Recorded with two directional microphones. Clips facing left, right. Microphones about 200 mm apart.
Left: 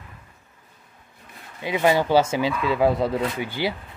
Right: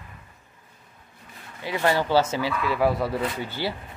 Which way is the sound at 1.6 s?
15° left (ahead or behind).